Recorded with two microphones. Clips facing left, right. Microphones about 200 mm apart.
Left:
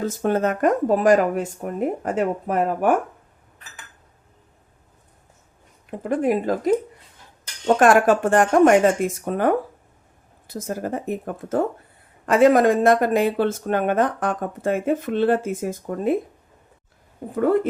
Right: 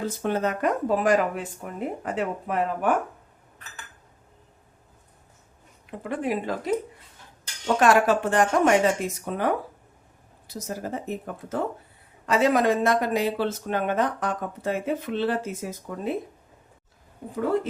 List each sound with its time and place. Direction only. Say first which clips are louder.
0.0 s speech: left 5 dB; 45° left (ahead or behind)
6.0 s speech: left 7 dB; 45° left (ahead or behind)
7.8 s speech: left 3 dB; 50° left (ahead or behind)